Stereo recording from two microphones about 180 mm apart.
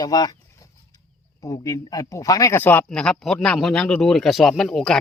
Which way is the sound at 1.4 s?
15° left (ahead or behind).